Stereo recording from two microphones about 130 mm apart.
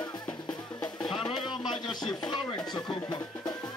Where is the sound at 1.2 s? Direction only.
35° left (ahead or behind).